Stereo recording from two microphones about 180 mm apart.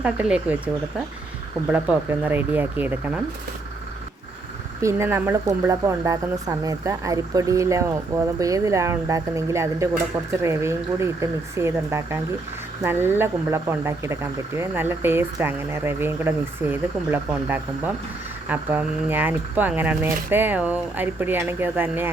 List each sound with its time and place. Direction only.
0.0 s speech: 5° right (ahead or behind)
1.7 s speech: 10° right (ahead or behind)
4.8 s speech: 15° right (ahead or behind)